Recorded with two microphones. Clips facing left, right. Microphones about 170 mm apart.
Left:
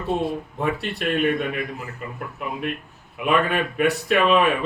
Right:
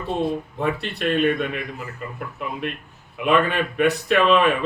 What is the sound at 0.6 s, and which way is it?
Speech, 5° left (ahead or behind).